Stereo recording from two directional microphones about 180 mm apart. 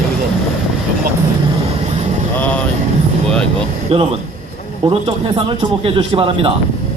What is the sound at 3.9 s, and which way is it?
A man's voice, 35° right (ahead or behind).